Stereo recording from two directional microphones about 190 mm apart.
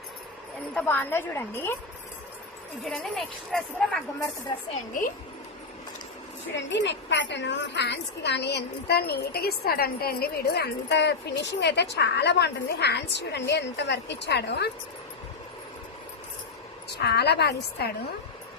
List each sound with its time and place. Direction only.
0.7 s a woman's voice: 5° left (ahead or behind)
2.8 s a woman's voice: centre (ahead or behind)
6.6 s a woman's voice: 70° left (ahead or behind)
17.0 s a woman's voice: 60° left (ahead or behind)